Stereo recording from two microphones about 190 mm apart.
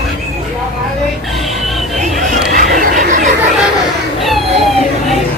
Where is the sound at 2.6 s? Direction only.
45° right (ahead or behind).